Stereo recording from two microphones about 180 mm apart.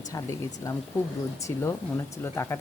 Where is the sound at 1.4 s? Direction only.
15° left (ahead or behind).